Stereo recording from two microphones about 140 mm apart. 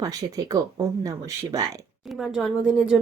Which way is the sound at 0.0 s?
25° right (ahead or behind).